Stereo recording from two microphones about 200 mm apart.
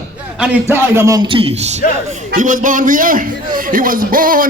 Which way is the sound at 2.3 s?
40° right (ahead or behind).